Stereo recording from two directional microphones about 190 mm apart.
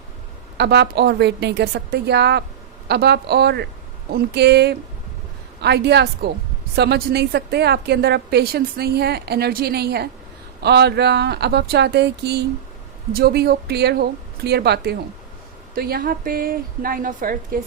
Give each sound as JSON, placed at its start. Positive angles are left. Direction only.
{"t": 0.5, "sound": "a woman's voice", "side_deg": -60}